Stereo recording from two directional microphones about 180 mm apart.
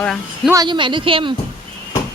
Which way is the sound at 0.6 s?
25° right (ahead or behind).